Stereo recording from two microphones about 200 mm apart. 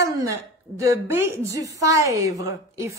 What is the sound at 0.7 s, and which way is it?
A woman's voice, 15° right (ahead or behind).